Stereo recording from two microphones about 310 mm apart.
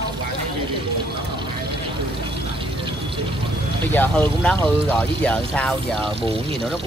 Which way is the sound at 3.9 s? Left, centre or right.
Centre.